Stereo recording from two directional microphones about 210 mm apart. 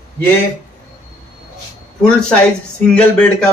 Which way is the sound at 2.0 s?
5° left (ahead or behind).